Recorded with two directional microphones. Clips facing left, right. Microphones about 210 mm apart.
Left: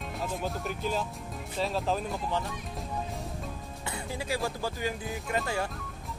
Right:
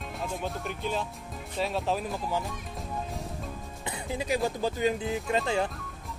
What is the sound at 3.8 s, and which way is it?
Speech, 20° right (ahead or behind).